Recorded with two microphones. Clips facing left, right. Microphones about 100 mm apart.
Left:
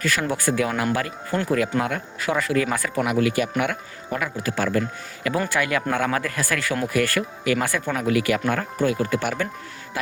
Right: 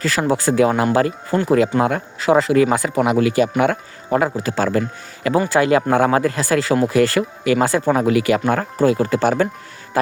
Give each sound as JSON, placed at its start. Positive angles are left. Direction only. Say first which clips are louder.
{"t": 0.0, "sound": "speech", "louder": "right 5 dB", "side_deg": -30}